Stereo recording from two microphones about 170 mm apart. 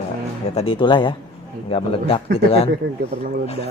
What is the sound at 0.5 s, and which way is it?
Speech, 35° left (ahead or behind).